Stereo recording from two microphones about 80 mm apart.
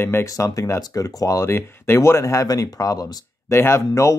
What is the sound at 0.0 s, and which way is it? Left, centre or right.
Speech, left.